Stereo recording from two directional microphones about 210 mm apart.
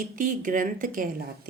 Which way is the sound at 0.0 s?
40° right (ahead or behind).